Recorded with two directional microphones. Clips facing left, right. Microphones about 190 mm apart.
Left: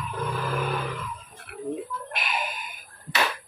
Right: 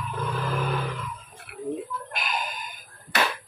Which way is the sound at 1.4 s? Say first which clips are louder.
Even; centre (ahead or behind).